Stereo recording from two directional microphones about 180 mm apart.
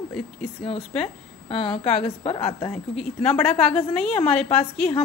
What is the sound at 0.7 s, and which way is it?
A woman's voice, 30° left (ahead or behind).